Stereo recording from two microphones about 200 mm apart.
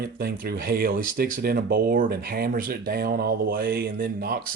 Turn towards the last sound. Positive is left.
turn(degrees=-50)  # may be behind; listen again after turning